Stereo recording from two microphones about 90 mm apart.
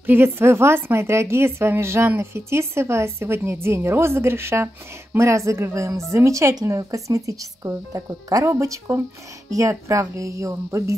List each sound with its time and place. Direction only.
0.0 s speech: 25° right (ahead or behind)